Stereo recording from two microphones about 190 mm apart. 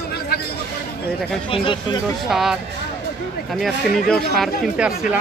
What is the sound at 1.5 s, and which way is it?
Speech, 25° left (ahead or behind).